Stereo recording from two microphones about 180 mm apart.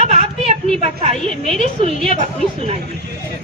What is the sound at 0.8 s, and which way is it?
A woman's voice, 35° right (ahead or behind).